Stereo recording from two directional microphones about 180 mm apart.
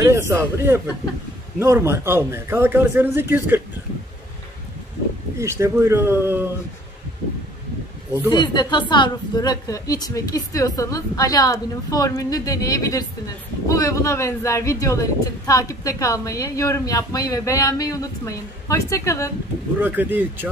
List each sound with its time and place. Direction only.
0.0 s speech: 15° right (ahead or behind)
5.4 s speech: 15° right (ahead or behind)
8.3 s a woman's voice: 25° left (ahead or behind)
19.8 s speech: 10° right (ahead or behind)